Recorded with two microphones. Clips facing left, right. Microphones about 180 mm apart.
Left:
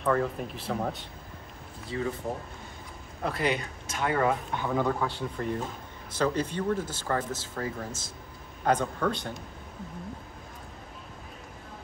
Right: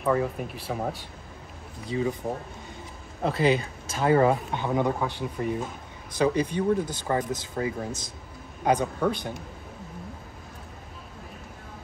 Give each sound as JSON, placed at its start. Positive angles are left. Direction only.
{"t": 0.0, "sound": "speech", "side_deg": -5}
{"t": 3.2, "sound": "speech", "side_deg": -30}